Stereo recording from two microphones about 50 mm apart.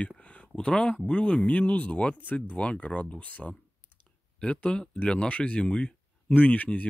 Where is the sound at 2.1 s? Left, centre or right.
Left.